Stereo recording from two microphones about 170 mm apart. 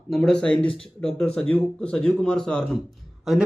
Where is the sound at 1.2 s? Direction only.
5° left (ahead or behind).